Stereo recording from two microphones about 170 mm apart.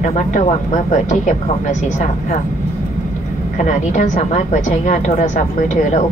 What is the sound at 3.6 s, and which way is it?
A woman's voice, 45° left (ahead or behind).